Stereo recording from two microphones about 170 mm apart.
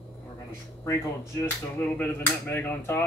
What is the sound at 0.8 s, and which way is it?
Speech, 15° left (ahead or behind).